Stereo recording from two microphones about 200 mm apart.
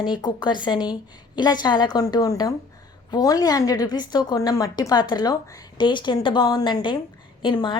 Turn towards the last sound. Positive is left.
turn(degrees=25)  # may be behind; listen again after turning